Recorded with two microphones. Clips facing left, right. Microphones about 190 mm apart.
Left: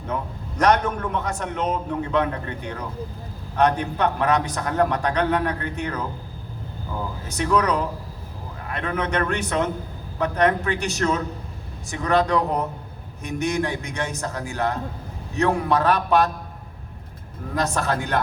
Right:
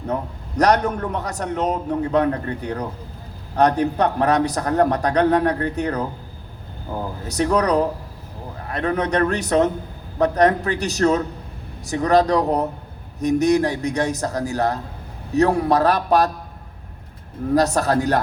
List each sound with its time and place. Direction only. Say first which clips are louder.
0.0 s a man's voice: right 3 dB; 40° right (ahead or behind)
7.3 s a man's voice: right 3 dB; 40° right (ahead or behind)
17.5 s a man's voice: right 6 dB; 40° right (ahead or behind)